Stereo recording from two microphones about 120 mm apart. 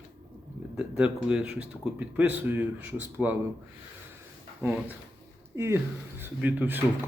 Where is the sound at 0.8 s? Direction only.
10° right (ahead or behind).